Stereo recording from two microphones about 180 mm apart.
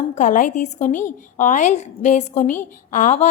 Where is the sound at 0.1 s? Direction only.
45° left (ahead or behind).